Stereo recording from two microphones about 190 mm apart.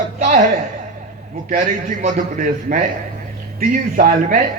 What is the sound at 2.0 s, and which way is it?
Speech, 40° right (ahead or behind).